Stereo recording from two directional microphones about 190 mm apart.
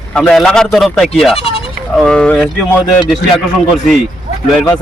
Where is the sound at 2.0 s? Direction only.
5° left (ahead or behind).